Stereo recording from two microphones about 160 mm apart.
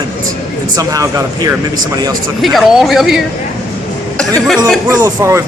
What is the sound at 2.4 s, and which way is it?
Speech, centre (ahead or behind).